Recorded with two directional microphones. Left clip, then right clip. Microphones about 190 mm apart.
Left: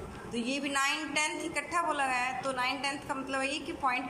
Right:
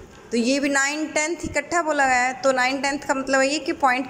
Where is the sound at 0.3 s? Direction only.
40° right (ahead or behind).